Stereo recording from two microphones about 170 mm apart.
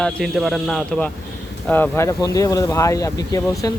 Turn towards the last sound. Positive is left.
turn(degrees=20)  # may be behind; listen again after turning